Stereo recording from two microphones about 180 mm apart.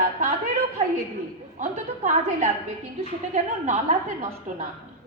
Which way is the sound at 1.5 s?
40° right (ahead or behind).